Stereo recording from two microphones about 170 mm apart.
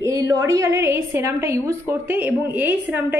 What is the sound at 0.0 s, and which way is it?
A woman's voice, 20° right (ahead or behind).